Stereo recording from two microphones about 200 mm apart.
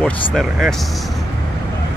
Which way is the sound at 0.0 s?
Centre (ahead or behind).